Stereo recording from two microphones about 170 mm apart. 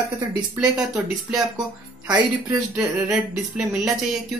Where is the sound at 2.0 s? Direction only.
25° right (ahead or behind).